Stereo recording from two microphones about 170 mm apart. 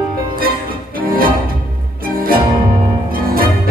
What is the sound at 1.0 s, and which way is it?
Music, 60° right (ahead or behind).